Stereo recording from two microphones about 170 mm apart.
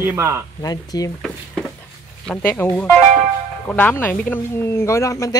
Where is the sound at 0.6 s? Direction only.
20° left (ahead or behind).